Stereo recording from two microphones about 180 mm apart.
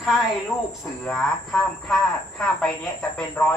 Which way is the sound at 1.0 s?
5° left (ahead or behind).